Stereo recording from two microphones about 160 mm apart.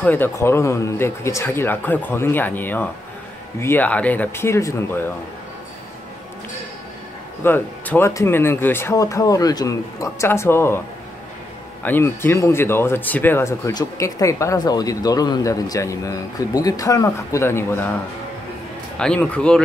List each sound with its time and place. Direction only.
0.0 s speech: 10° left (ahead or behind)
7.4 s speech: 10° left (ahead or behind)
11.8 s speech: 15° left (ahead or behind)
18.9 s speech: 5° left (ahead or behind)